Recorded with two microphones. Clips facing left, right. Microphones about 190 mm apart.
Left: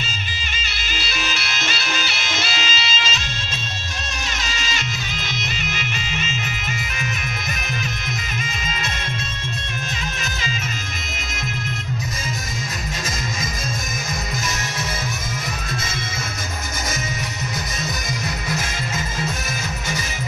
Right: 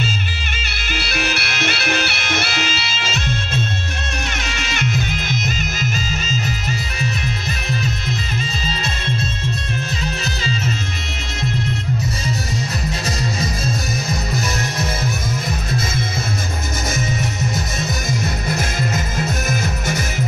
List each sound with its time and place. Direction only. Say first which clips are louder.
0.6 s bagpipes: right 3 dB; 60° right (ahead or behind)
4.5 s music: right 3 dB; 60° right (ahead or behind)
5.3 s music: right 5 dB; 45° right (ahead or behind)